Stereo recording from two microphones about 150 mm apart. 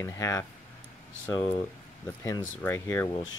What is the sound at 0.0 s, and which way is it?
Speech, 20° left (ahead or behind).